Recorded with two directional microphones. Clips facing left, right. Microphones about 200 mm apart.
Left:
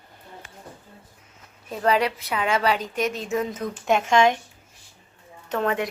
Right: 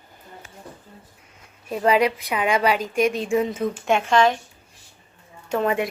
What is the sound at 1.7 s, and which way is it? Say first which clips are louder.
A woman's voice: right 3 dB; 10° right (ahead or behind).